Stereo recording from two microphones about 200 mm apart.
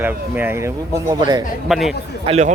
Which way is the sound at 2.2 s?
35° right (ahead or behind).